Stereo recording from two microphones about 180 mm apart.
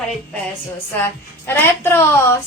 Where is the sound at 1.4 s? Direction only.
15° left (ahead or behind).